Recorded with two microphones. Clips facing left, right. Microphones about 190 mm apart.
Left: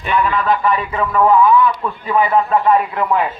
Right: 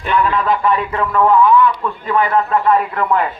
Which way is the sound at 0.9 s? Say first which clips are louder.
Left 1 dB; 10° left (ahead or behind).